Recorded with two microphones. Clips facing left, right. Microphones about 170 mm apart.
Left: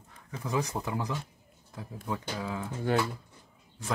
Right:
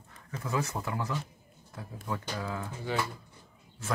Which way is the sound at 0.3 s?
15° left (ahead or behind).